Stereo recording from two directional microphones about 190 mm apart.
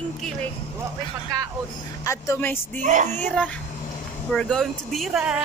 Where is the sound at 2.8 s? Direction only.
40° right (ahead or behind).